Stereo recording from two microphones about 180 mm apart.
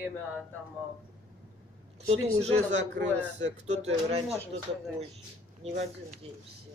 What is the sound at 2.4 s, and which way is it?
Speech, 40° right (ahead or behind).